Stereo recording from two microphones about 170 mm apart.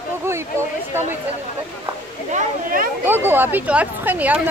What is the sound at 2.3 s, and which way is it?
Speech, 55° right (ahead or behind).